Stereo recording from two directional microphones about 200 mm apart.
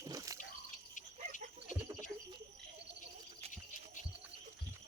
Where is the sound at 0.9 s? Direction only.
40° left (ahead or behind).